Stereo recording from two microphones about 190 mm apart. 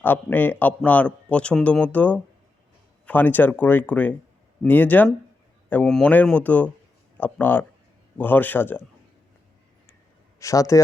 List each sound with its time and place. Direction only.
0.0 s a man's voice: 10° left (ahead or behind)
10.4 s a man's voice: 15° left (ahead or behind)